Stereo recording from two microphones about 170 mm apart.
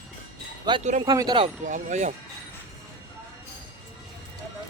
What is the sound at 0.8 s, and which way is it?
Speech, 45° right (ahead or behind).